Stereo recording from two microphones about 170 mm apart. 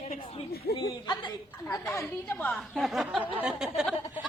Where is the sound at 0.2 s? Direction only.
35° left (ahead or behind); by 2.5 s 15° left (ahead or behind).